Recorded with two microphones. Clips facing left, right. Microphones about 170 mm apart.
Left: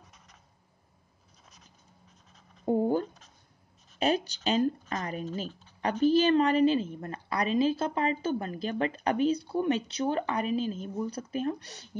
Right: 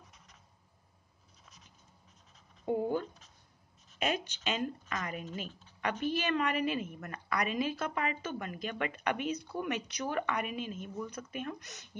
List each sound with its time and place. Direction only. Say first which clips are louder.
2.6 s speech: left 6 dB; 35° left (ahead or behind)